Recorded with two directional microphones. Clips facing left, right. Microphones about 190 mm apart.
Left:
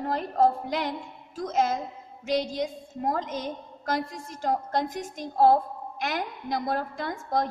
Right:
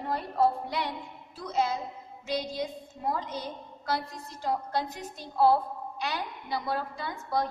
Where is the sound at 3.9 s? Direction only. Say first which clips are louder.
Left 5 dB; 90° left.